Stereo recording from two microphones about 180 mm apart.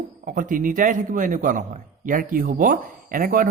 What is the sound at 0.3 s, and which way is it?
A man's voice, 50° right (ahead or behind).